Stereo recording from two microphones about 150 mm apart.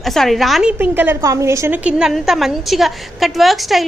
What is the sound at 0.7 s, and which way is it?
A woman's voice, 15° right (ahead or behind).